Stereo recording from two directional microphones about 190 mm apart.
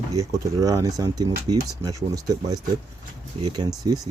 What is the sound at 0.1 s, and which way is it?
Speech, 15° right (ahead or behind).